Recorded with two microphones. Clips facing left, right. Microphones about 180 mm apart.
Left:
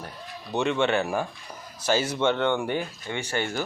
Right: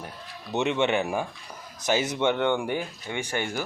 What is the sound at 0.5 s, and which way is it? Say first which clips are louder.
Speech: even; 20° right (ahead or behind).